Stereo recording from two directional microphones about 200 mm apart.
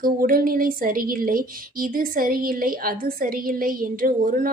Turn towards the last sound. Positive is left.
turn(degrees=-45)  # may be behind; listen again after turning